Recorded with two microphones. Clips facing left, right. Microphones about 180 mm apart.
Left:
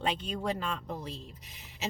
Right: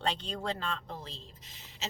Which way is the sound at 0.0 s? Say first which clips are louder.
Left 2 dB; 10° left (ahead or behind).